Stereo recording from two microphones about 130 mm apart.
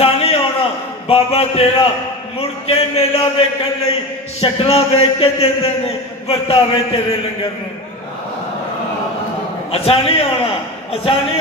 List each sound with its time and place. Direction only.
0.0 s a sound: 50° left (ahead or behind)
1.0 s a man's voice: 50° left (ahead or behind)
9.7 s a man's voice: 50° left (ahead or behind)